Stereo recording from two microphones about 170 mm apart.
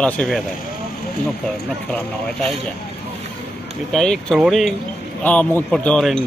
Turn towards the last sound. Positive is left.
turn(degrees=5)  # may be behind; listen again after turning